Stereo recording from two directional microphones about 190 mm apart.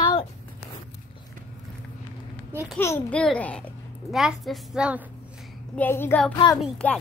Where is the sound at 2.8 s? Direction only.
10° left (ahead or behind); by 5.0 s 5° right (ahead or behind).